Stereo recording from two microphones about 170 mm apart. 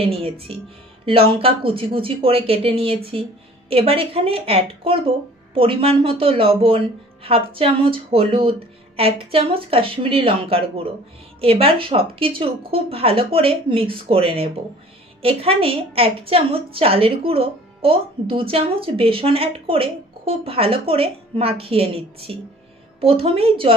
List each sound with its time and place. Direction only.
0.0 s a woman's voice: 35° right (ahead or behind)